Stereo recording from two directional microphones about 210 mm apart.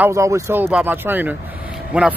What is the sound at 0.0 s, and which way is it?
Speech, 15° right (ahead or behind).